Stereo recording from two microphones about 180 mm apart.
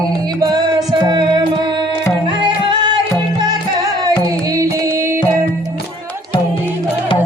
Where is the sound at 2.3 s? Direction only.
25° right (ahead or behind).